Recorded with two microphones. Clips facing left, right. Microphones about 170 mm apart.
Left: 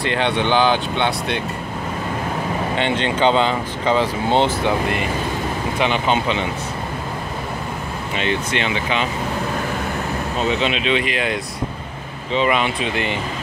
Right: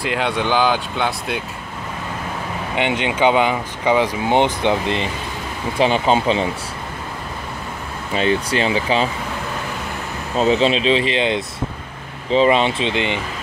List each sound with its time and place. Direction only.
0.0 s speech: centre (ahead or behind)
2.7 s speech: 15° right (ahead or behind); by 6.5 s 35° right (ahead or behind)
8.1 s speech: 35° right (ahead or behind)
10.4 s speech: 35° right (ahead or behind)